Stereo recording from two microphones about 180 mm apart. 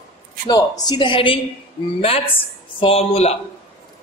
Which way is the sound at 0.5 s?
25° left (ahead or behind).